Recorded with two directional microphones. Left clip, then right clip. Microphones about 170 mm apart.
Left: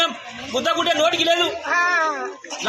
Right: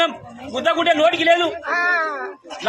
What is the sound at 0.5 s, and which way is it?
Speech, 35° right (ahead or behind).